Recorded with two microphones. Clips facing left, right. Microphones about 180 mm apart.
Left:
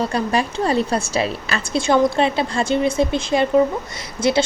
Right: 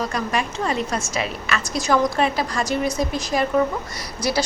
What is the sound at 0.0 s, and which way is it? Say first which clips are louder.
A woman's voice: left 4 dB; 30° left (ahead or behind).